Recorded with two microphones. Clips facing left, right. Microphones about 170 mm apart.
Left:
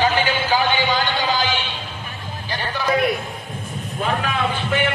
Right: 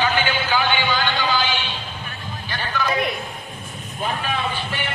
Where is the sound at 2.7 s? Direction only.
35° left (ahead or behind).